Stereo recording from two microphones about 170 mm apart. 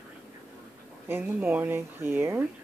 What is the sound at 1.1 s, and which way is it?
Speech, 10° right (ahead or behind).